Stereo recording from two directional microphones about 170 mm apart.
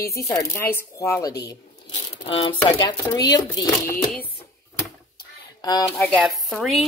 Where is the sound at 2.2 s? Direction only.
30° left (ahead or behind).